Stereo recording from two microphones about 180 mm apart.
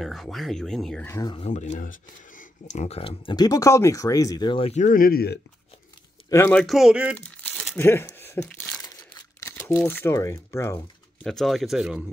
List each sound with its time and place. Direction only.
0.0 s speech: centre (ahead or behind)
1.0 s speech: 20° left (ahead or behind)
1.4 s speech: 40° left (ahead or behind); by 5.4 s 60° left (ahead or behind)
6.3 s speech: 15° left (ahead or behind)
6.6 s speech: centre (ahead or behind)
7.2 s crumpling: 5° left (ahead or behind)
9.8 s speech: 10° left (ahead or behind)
11.2 s speech: centre (ahead or behind)